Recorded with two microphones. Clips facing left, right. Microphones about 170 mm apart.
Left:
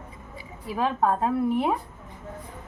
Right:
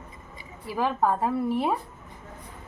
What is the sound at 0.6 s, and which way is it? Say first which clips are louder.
Speech: even; 25° left (ahead or behind).